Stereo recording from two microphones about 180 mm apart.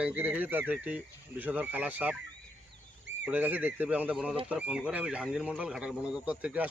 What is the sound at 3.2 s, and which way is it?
Speech, 10° right (ahead or behind).